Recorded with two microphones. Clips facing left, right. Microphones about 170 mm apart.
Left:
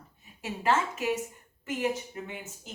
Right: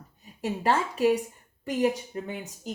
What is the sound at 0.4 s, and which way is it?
A woman's voice, 35° right (ahead or behind).